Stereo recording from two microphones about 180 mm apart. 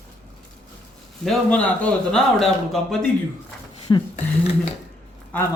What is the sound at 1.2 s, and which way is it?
Speech, 5° left (ahead or behind).